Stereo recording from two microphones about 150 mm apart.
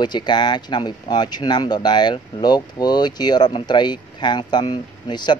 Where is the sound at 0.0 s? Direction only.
30° left (ahead or behind).